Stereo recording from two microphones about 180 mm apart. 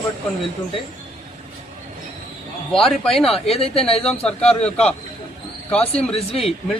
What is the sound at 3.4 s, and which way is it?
Speech, 35° left (ahead or behind).